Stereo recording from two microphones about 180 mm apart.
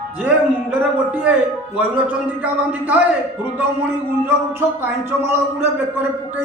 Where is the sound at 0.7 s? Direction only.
10° right (ahead or behind).